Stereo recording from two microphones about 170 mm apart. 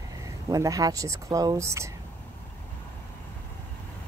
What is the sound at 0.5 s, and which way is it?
Speech, 20° right (ahead or behind).